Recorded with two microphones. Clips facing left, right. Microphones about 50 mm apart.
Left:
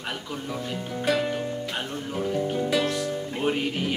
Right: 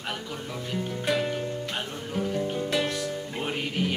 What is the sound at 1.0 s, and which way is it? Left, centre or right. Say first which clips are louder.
Music: left 3 dB; centre.